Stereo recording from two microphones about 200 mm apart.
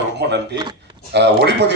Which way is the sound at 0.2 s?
55° right (ahead or behind).